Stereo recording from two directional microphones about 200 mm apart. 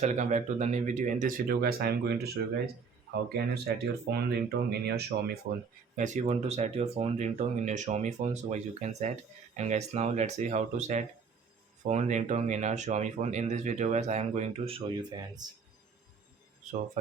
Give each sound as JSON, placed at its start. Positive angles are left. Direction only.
{"t": 0.0, "sound": "speech", "side_deg": -35}
{"t": 6.0, "sound": "speech", "side_deg": -35}